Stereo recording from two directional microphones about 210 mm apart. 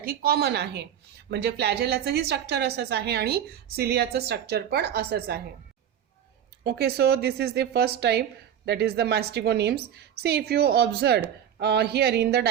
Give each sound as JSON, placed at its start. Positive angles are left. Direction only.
{"t": 0.0, "sound": "a woman's voice", "side_deg": -45}
{"t": 6.7, "sound": "a woman's voice", "side_deg": -50}